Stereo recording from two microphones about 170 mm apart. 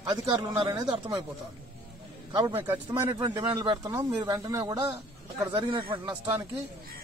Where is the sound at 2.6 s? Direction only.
10° right (ahead or behind).